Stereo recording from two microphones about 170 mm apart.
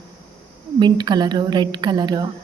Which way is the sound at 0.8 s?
25° right (ahead or behind).